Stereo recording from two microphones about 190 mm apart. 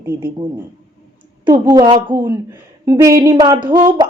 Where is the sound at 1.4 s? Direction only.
20° right (ahead or behind).